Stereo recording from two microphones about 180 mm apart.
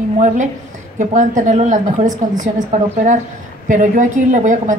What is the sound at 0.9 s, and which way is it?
A woman's voice, 45° right (ahead or behind).